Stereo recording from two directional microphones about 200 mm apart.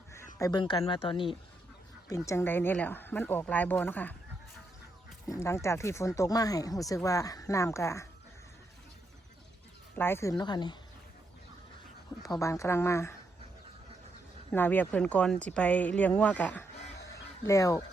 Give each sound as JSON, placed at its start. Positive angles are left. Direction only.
{"t": 0.3, "sound": "speech", "side_deg": 20}
{"t": 5.3, "sound": "speech", "side_deg": 15}
{"t": 9.9, "sound": "speech", "side_deg": 10}
{"t": 12.4, "sound": "speech", "side_deg": 15}
{"t": 14.5, "sound": "speech", "side_deg": 10}